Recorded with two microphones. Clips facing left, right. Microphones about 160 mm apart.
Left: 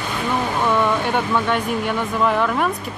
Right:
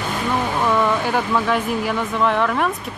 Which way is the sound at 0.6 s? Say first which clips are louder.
Even; centre (ahead or behind).